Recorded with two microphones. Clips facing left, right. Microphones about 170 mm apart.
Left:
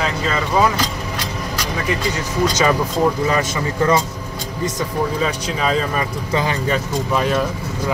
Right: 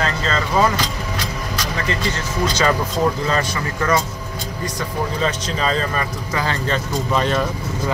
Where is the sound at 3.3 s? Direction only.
20° left (ahead or behind).